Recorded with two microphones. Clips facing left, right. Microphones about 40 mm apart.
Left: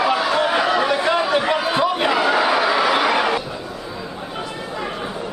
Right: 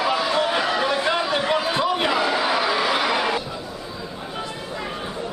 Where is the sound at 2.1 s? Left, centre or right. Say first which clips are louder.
Left 4 dB; left.